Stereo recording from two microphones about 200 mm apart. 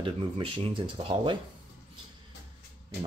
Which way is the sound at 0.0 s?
25° right (ahead or behind).